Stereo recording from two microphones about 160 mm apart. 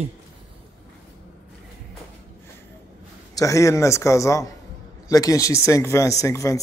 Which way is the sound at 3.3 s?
20° left (ahead or behind).